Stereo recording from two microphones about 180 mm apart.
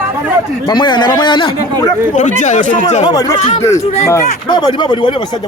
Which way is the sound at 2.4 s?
45° left (ahead or behind).